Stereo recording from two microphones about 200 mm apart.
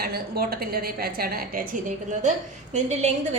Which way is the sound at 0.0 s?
50° right (ahead or behind).